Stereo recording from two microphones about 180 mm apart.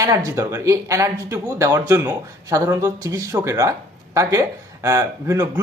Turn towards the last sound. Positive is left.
turn(degrees=-15)  # may be behind; listen again after turning